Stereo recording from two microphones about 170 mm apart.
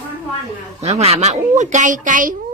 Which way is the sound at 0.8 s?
40° right (ahead or behind).